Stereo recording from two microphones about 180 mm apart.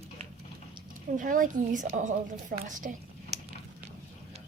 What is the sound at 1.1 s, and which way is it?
A woman's voice, 45° right (ahead or behind).